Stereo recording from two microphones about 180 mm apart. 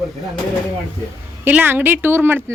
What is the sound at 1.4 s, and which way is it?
Speech, 10° right (ahead or behind).